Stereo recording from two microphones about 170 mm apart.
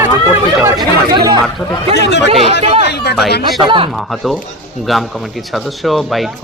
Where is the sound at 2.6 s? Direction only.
40° right (ahead or behind).